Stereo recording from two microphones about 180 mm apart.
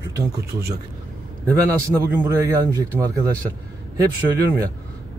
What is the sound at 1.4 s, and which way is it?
A man's voice, 20° right (ahead or behind).